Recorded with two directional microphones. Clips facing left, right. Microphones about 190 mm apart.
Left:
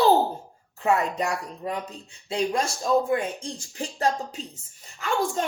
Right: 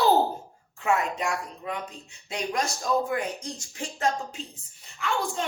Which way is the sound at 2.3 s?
30° left (ahead or behind).